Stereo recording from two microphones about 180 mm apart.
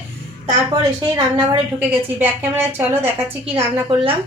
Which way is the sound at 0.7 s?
20° right (ahead or behind).